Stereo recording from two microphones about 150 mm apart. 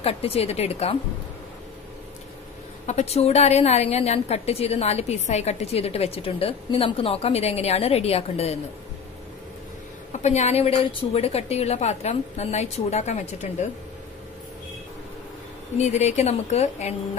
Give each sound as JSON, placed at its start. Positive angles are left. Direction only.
{"t": 0.0, "sound": "a woman's voice", "side_deg": 40}
{"t": 2.9, "sound": "a woman's voice", "side_deg": 45}
{"t": 10.1, "sound": "a woman's voice", "side_deg": 50}
{"t": 15.8, "sound": "a woman's voice", "side_deg": 50}